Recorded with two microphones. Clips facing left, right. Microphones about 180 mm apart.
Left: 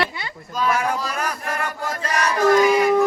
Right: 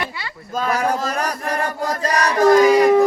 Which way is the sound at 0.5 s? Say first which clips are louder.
Right 2 dB; 45° right (ahead or behind).